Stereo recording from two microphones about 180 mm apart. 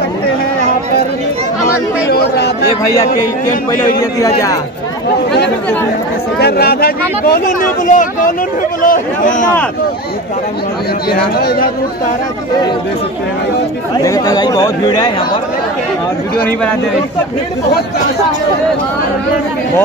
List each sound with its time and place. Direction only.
2.0 s speech: 65° left (ahead or behind)
4.2 s speech: 20° left (ahead or behind)
6.4 s speech: 60° left (ahead or behind)
11.1 s speech: 60° left (ahead or behind)
13.9 s speech: 20° left (ahead or behind)